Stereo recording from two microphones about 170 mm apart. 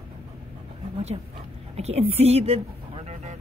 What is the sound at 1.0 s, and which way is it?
Dog, 40° right (ahead or behind).